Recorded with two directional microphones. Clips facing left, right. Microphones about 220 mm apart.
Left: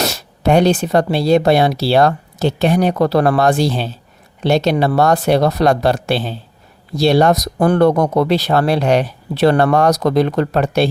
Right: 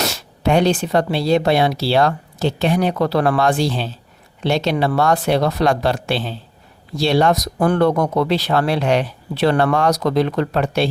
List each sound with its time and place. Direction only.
0.0 s speech: 40° left (ahead or behind)